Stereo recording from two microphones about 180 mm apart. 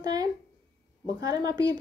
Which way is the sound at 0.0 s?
20° right (ahead or behind).